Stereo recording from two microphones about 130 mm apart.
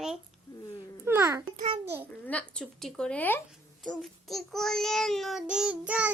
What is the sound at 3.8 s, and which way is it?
A child's voice, centre (ahead or behind).